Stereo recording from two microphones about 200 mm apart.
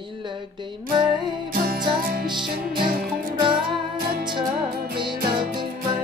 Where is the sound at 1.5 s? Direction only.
45° right (ahead or behind).